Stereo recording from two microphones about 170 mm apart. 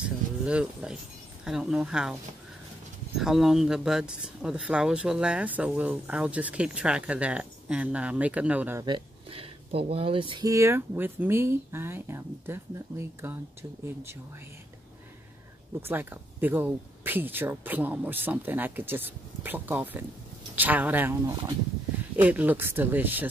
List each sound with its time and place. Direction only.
0.0 s a sound: 5° right (ahead or behind)
1.4 s speech: 5° right (ahead or behind)
3.2 s speech: centre (ahead or behind)
8.8 s speech: 30° right (ahead or behind)
10.5 s speech: 15° right (ahead or behind)
15.8 s speech: 10° right (ahead or behind)